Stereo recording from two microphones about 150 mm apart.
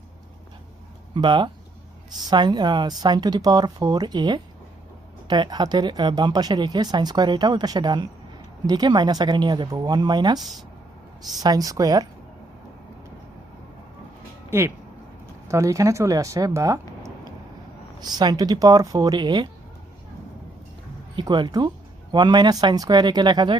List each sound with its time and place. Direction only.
1.1 s speech: 30° right (ahead or behind)
14.5 s speech: 15° right (ahead or behind)
21.2 s speech: 30° right (ahead or behind)